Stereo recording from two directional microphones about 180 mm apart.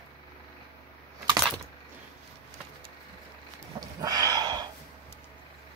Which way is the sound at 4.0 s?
20° right (ahead or behind).